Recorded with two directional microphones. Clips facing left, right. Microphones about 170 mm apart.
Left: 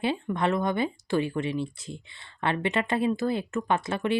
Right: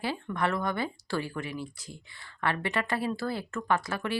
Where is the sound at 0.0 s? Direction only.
20° left (ahead or behind).